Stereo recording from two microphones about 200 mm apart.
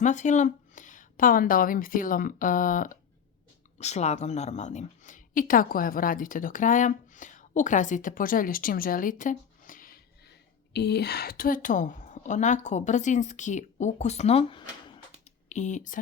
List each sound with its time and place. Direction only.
0.0 s a woman's voice: 35° left (ahead or behind)
10.8 s a woman's voice: 55° left (ahead or behind); by 16.0 s 40° left (ahead or behind)